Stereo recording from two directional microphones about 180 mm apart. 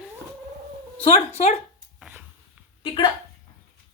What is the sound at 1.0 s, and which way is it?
Speech, 35° left (ahead or behind).